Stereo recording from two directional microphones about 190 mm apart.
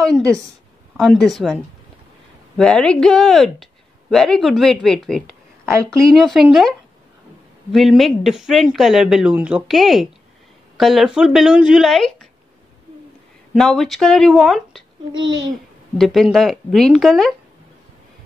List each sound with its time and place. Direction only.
0.0 s speech: 5° left (ahead or behind)
5.8 s speech: 15° right (ahead or behind)
6.1 s speech: centre (ahead or behind)
7.7 s speech: centre (ahead or behind)
13.6 s speech: centre (ahead or behind)
15.1 s a child's voice: 25° right (ahead or behind)
16.0 s speech: centre (ahead or behind)